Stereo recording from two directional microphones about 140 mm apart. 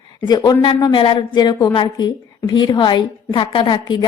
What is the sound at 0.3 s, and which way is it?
A woman's voice, 30° left (ahead or behind).